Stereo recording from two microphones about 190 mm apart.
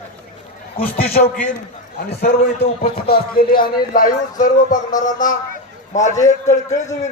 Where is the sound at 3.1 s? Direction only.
50° left (ahead or behind).